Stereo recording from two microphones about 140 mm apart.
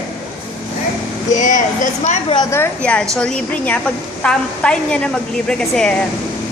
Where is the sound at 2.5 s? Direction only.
10° left (ahead or behind).